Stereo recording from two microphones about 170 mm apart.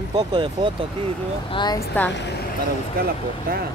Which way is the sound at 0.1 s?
30° right (ahead or behind).